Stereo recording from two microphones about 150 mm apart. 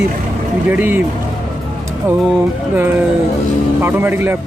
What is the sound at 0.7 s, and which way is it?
Speech, 10° right (ahead or behind).